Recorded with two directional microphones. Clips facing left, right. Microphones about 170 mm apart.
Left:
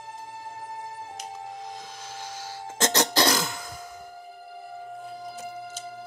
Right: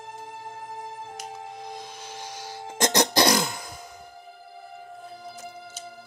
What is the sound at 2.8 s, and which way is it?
Cough, 15° right (ahead or behind).